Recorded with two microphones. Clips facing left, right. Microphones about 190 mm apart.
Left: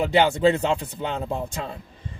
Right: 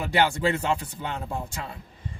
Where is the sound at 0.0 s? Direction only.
20° left (ahead or behind).